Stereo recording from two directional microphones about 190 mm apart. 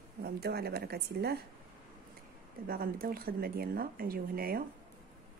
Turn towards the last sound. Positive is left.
turn(degrees=-50)  # may be behind; listen again after turning